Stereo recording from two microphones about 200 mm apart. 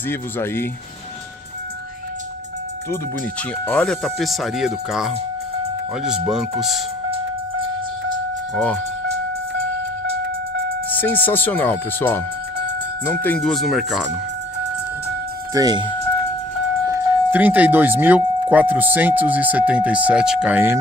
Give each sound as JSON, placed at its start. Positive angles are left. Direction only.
{"t": 0.1, "sound": "speech", "side_deg": 10}
{"t": 3.6, "sound": "speech", "side_deg": 5}
{"t": 10.9, "sound": "speech", "side_deg": 10}
{"t": 15.5, "sound": "speech", "side_deg": -20}
{"t": 17.1, "sound": "speech", "side_deg": -10}